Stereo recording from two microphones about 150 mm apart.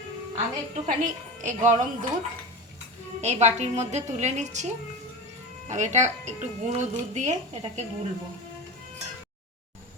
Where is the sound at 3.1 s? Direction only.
50° right (ahead or behind).